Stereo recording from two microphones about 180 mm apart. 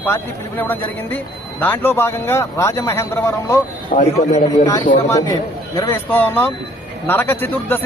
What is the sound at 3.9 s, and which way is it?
A man's voice, 40° left (ahead or behind).